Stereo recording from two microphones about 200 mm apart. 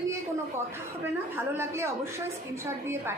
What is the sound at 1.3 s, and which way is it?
A woman's voice, 10° right (ahead or behind).